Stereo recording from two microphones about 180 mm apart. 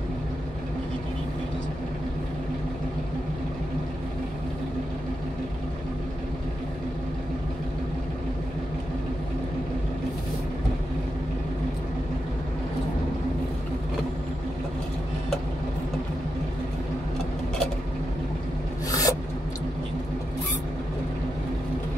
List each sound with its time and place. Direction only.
18.9 s filing: 20° left (ahead or behind)